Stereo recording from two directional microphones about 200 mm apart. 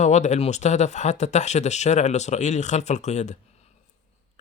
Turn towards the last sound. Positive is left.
turn(degrees=35)  # may be behind; listen again after turning